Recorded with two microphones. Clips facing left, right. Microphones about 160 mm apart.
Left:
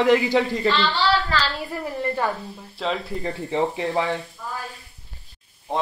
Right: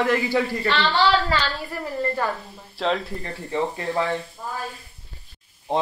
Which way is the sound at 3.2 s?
20° left (ahead or behind).